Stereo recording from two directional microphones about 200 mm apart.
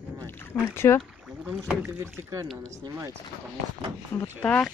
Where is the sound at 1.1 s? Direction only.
5° right (ahead or behind).